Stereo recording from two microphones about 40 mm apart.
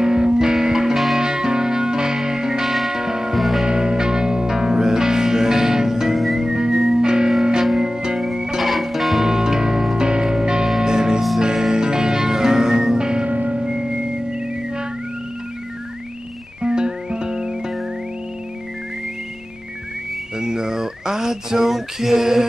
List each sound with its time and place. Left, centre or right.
0.0 s music: centre
0.9 s music: centre
1.2 s music: centre
3.3 s music: centre
3.6 s music: centre
8.5 s music: centre
9.2 s music: centre
13.3 s music: right
13.6 s music: centre
16.6 s music: right
20.3 s a sound: centre